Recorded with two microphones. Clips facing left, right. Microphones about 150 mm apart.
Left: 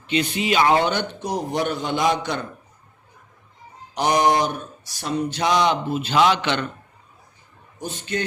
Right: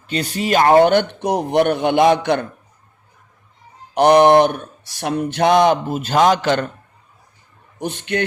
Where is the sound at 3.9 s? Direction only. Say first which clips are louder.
Right 8 dB; 60° right (ahead or behind); by 6.7 s 45° right (ahead or behind).